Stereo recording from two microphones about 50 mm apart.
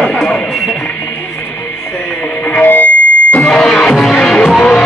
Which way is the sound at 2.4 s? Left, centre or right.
Left.